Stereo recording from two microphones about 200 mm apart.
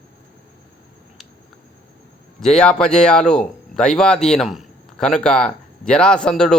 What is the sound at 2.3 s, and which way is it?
Speech, 5° left (ahead or behind).